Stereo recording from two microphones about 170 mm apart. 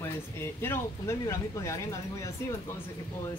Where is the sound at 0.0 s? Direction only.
15° left (ahead or behind).